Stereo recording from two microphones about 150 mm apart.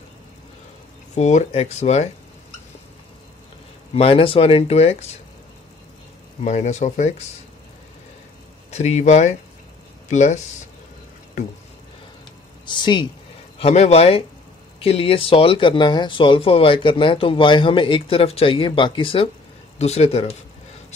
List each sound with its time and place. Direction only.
1.1 s speech: 50° left (ahead or behind)
3.9 s speech: 40° left (ahead or behind)
6.4 s speech: 50° left (ahead or behind)
8.6 s speech: 45° left (ahead or behind)
12.6 s speech: 30° left (ahead or behind)
13.6 s speech: 45° left (ahead or behind)
19.8 s speech: 45° left (ahead or behind)